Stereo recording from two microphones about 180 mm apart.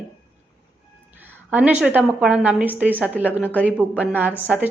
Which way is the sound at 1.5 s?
5° right (ahead or behind).